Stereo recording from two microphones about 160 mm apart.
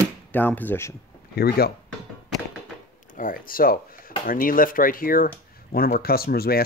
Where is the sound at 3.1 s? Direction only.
55° left (ahead or behind); by 6.6 s 70° left (ahead or behind).